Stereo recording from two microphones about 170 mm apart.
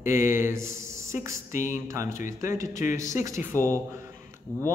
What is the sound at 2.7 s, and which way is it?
Mantra, 50° left (ahead or behind).